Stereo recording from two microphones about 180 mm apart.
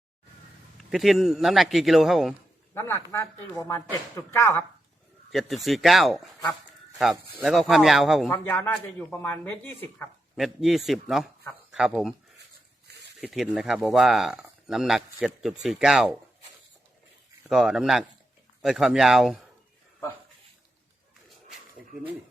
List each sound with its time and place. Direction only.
0.8 s speech: centre (ahead or behind)
2.7 s speech: 10° left (ahead or behind)
5.3 s speech: centre (ahead or behind)
8.3 s speech: 10° left (ahead or behind)
10.3 s speech: centre (ahead or behind)
13.1 s speech: centre (ahead or behind)
17.5 s speech: 5° right (ahead or behind)